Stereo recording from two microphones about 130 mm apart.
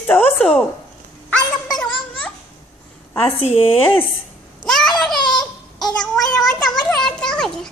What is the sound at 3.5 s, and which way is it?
Speech, 45° left (ahead or behind).